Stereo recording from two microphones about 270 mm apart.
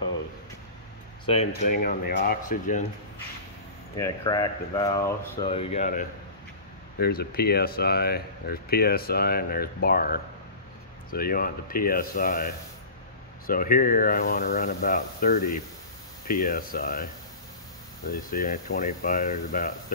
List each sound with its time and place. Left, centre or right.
1.2 s speech: left
1.8 s speech: left
3.9 s speech: centre; by 12.4 s left
13.5 s speech: left